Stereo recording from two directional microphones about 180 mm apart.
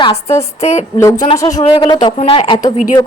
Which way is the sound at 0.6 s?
40° left (ahead or behind).